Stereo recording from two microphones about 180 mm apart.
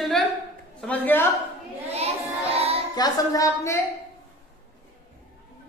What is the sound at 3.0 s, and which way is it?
Speech, 15° left (ahead or behind).